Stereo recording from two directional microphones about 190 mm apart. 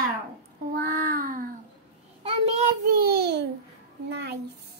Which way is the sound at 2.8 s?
55° right (ahead or behind).